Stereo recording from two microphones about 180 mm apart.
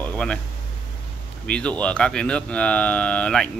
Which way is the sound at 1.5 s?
5° left (ahead or behind).